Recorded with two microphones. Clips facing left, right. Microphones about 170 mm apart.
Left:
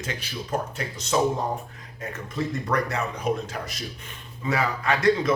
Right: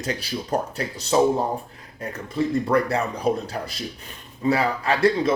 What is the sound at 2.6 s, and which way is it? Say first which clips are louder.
Speech: right 5 dB; 30° right (ahead or behind).